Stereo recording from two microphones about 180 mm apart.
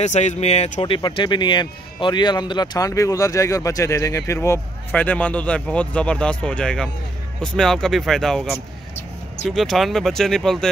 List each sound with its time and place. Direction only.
0.0 s speech: 40° left (ahead or behind); by 10.7 s centre (ahead or behind)